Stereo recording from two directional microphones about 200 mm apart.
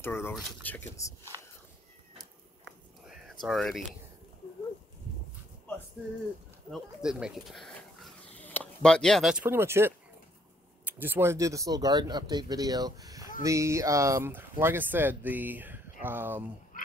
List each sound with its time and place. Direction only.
0.0 s speech: 10° left (ahead or behind)
1.3 s speech: 20° right (ahead or behind)
3.1 s a sound: centre (ahead or behind)
6.7 s speech: 5° right (ahead or behind)
16.7 s frog: 45° left (ahead or behind)